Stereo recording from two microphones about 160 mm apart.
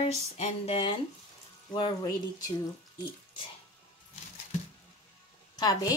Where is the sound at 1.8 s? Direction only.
25° left (ahead or behind).